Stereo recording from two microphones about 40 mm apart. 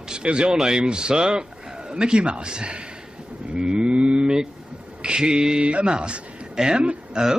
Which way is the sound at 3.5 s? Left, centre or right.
Right.